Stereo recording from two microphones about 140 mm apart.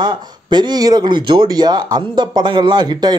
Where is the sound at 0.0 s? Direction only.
30° right (ahead or behind).